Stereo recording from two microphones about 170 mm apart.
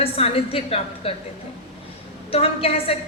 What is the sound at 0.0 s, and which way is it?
A man's voice, 35° left (ahead or behind).